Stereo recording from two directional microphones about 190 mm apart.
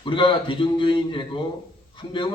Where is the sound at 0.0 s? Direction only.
25° left (ahead or behind).